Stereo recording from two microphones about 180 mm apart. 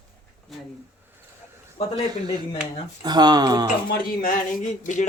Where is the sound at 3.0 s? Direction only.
25° right (ahead or behind).